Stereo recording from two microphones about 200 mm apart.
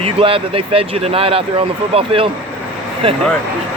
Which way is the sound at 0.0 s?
30° right (ahead or behind).